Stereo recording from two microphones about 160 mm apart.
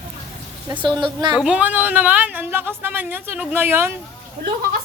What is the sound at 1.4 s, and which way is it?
A woman's voice, 5° right (ahead or behind).